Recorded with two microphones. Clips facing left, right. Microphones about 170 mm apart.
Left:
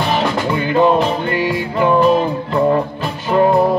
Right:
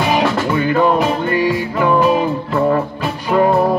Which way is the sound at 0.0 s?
5° right (ahead or behind).